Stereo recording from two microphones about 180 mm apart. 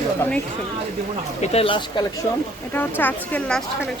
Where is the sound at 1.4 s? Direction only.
35° left (ahead or behind).